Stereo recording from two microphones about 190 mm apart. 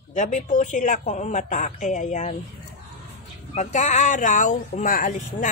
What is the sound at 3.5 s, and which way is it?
Speech, 40° left (ahead or behind).